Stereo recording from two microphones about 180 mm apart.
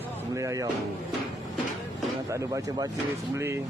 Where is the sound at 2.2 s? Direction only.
15° right (ahead or behind).